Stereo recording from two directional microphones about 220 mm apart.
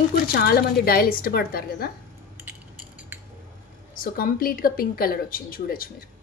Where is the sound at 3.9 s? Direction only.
40° left (ahead or behind).